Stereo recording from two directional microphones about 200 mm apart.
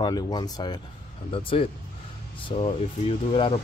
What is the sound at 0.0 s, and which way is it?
Speech, 20° left (ahead or behind).